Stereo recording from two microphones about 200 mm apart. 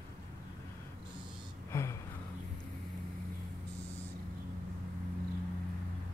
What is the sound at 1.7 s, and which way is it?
Gasp, 10° left (ahead or behind).